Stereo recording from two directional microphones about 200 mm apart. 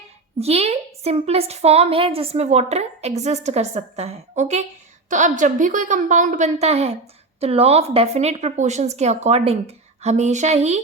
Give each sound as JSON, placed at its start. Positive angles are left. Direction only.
{"t": 0.3, "sound": "a woman's voice", "side_deg": -30}